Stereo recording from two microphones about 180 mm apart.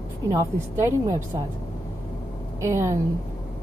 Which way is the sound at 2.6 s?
15° right (ahead or behind).